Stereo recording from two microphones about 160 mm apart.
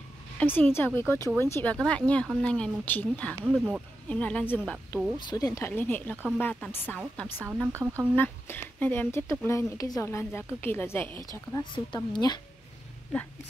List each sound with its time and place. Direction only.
0.4 s speech: 10° left (ahead or behind)
3.4 s speech: 10° right (ahead or behind)
4.1 s speech: 10° left (ahead or behind)
5.2 s speech: 20° left (ahead or behind)
7.3 s speech: 5° right (ahead or behind)
8.2 s speech: 10° left (ahead or behind)
11.7 s a woman's voice: 30° left (ahead or behind)